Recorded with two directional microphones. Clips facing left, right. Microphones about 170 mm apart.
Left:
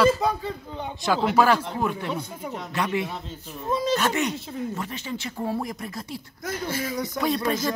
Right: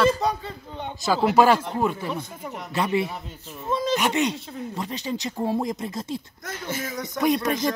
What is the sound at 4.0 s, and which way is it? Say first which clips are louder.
Speech: right 1 dB; 15° right (ahead or behind).